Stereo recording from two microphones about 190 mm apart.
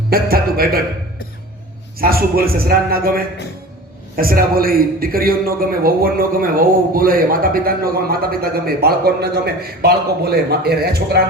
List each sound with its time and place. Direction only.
0.1 s a man's voice: 50° right (ahead or behind)
2.0 s a man's voice: 50° right (ahead or behind)